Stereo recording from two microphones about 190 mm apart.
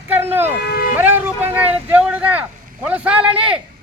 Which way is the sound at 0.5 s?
55° left (ahead or behind).